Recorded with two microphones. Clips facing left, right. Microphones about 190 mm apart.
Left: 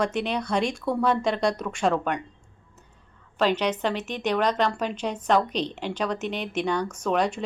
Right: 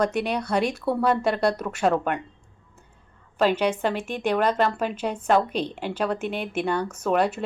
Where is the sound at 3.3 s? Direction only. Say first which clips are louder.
Right 2 dB; 10° right (ahead or behind).